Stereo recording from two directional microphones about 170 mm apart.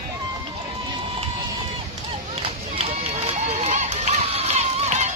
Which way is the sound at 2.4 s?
35° right (ahead or behind).